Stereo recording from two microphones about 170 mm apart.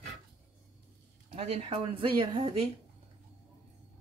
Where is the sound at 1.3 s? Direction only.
35° right (ahead or behind).